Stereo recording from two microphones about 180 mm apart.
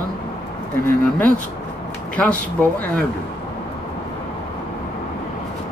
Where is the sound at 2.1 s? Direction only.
5° left (ahead or behind).